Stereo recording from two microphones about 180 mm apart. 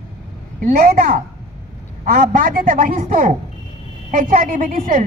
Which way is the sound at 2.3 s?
50° right (ahead or behind).